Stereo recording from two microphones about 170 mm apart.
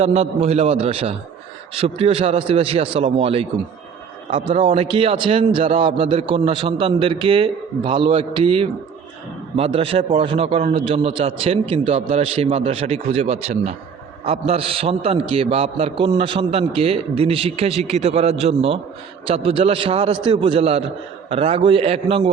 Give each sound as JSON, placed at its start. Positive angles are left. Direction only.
{"t": 0.0, "sound": "a man's voice", "side_deg": -35}